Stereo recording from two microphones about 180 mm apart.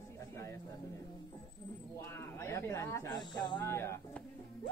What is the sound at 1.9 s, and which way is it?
Speech, 15° left (ahead or behind).